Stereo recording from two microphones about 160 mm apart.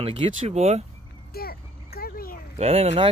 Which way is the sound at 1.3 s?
70° left (ahead or behind).